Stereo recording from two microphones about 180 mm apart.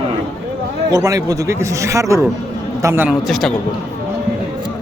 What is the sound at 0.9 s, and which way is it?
A man's voice, 20° right (ahead or behind).